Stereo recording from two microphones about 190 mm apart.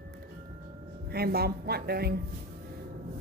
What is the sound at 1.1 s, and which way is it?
Speech, 55° right (ahead or behind).